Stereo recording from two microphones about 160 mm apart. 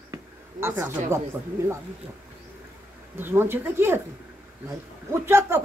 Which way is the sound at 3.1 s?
15° right (ahead or behind).